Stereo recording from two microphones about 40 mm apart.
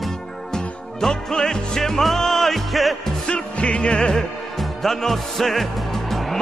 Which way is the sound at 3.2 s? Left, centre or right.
Left.